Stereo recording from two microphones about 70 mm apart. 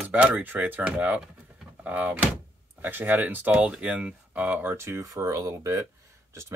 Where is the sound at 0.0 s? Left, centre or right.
Right.